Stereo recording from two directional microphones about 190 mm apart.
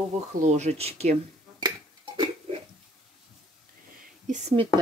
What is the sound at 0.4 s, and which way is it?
Speech, 35° right (ahead or behind).